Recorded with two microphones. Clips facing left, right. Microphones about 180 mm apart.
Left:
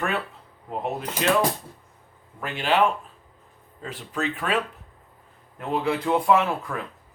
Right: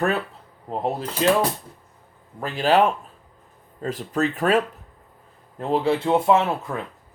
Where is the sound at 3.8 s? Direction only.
40° right (ahead or behind).